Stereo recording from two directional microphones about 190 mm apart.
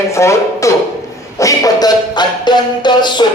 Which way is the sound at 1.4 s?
20° left (ahead or behind).